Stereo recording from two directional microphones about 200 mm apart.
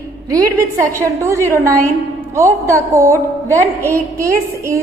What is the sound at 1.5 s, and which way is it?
A woman's voice, 15° right (ahead or behind).